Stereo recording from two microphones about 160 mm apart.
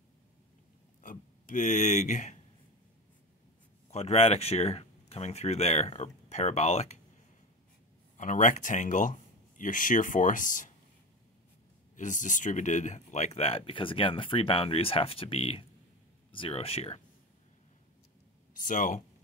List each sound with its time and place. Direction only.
1.0 s speech: 55° left (ahead or behind)
3.9 s speech: 40° left (ahead or behind)
8.2 s speech: 50° left (ahead or behind)
12.0 s speech: 50° left (ahead or behind)
18.6 s speech: 55° left (ahead or behind)